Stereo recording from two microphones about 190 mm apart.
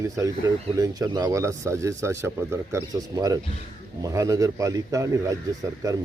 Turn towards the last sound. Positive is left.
turn(degrees=-20)  # may be behind; listen again after turning